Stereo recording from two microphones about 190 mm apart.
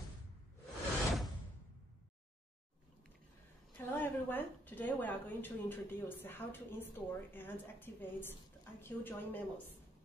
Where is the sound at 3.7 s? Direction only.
10° left (ahead or behind).